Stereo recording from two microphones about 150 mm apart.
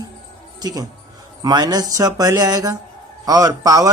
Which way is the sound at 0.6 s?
25° right (ahead or behind).